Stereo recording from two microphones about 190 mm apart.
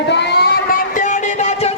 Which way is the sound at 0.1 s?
60° left (ahead or behind).